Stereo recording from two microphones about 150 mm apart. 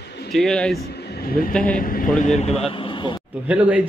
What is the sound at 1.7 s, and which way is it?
Speech, 70° left (ahead or behind).